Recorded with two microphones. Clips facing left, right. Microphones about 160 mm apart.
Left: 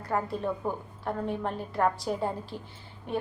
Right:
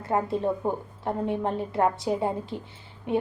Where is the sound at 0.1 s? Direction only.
25° right (ahead or behind).